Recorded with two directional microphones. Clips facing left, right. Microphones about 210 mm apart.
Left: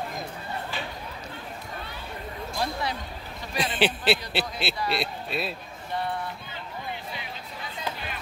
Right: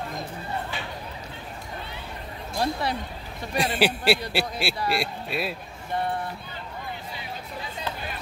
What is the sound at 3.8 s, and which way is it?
Speech, 10° right (ahead or behind).